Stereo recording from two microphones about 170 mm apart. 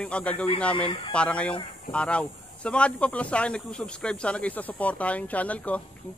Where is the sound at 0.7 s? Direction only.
30° left (ahead or behind).